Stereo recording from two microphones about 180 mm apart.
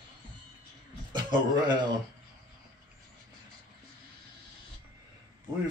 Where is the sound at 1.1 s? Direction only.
25° right (ahead or behind).